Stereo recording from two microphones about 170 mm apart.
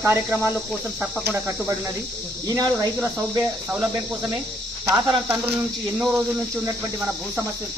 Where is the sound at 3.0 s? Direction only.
10° right (ahead or behind).